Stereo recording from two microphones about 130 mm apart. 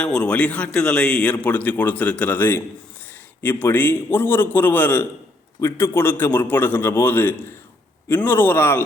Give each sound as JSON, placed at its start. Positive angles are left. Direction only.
{"t": 0.0, "sound": "a man's voice", "side_deg": 10}